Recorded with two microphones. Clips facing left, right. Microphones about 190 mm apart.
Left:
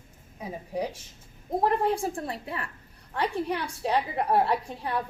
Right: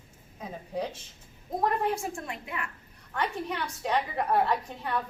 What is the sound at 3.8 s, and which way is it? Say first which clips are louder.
A woman's voice: left 1 dB; 30° left (ahead or behind).